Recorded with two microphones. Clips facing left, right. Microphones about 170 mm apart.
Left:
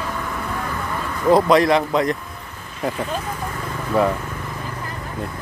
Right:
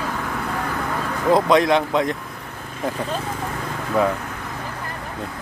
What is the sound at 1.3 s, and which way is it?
Speech, centre (ahead or behind).